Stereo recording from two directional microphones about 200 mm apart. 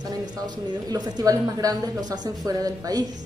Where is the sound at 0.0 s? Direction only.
20° right (ahead or behind).